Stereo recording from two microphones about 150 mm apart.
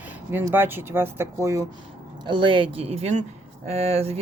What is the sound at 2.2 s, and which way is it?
Speech, 30° right (ahead or behind).